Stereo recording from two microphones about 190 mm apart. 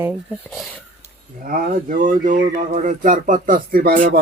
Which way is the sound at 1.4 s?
50° right (ahead or behind).